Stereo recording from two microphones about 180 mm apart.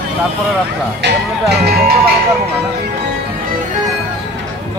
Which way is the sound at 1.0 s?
65° right (ahead or behind).